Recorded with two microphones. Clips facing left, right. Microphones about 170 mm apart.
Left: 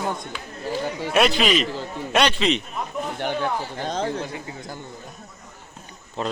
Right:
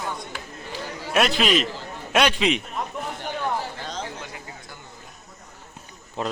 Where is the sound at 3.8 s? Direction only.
50° left (ahead or behind).